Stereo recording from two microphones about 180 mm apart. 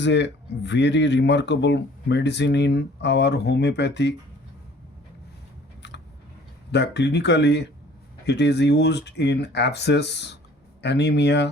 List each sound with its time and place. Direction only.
0.0 s speech: 75° left (ahead or behind)
5.8 s vehicle: 70° left (ahead or behind)
6.7 s speech: 70° left (ahead or behind)